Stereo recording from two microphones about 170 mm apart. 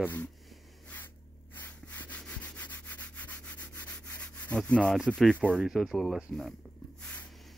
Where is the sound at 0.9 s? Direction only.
10° left (ahead or behind).